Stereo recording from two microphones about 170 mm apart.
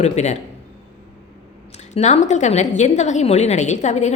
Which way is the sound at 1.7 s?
40° left (ahead or behind).